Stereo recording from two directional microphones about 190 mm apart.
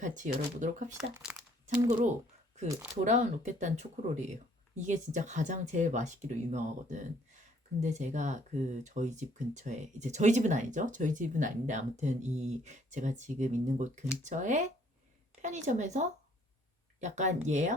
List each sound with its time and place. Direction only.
0.0 s speech: 40° right (ahead or behind)
0.9 s speech: 5° right (ahead or behind)
1.6 s speech: 40° right (ahead or behind)